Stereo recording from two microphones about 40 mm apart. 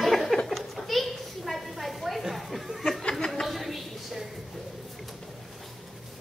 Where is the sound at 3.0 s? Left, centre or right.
Centre.